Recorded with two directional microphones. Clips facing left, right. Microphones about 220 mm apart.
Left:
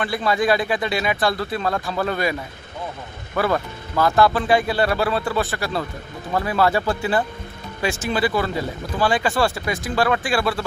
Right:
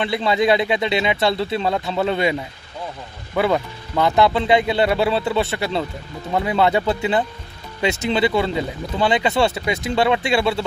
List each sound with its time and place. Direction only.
0.0 s speech: 25° right (ahead or behind)
3.3 s speech: 20° right (ahead or behind)